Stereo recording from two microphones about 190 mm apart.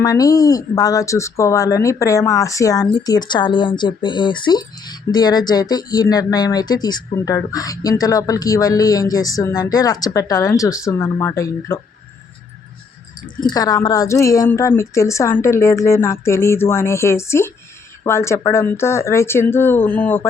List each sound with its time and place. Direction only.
0.0 s a woman's voice: 20° left (ahead or behind)
13.4 s a woman's voice: 20° left (ahead or behind)